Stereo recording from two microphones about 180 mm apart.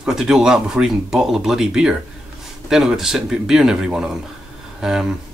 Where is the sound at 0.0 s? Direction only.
Centre (ahead or behind).